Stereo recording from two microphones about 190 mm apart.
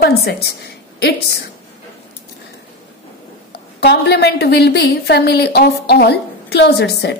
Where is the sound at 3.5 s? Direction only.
60° left (ahead or behind).